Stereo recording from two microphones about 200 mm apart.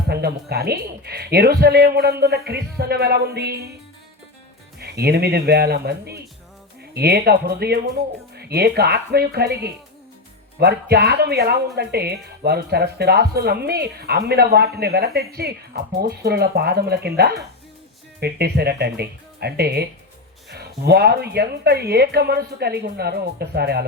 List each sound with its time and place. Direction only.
0.1 s speech: 55° right (ahead or behind)
4.8 s speech: 55° right (ahead or behind)